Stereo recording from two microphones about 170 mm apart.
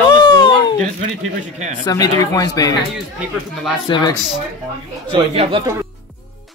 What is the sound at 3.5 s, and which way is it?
Speech, centre (ahead or behind).